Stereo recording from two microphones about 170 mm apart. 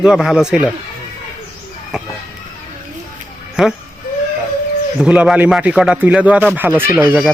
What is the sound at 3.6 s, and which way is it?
Speech, 5° right (ahead or behind).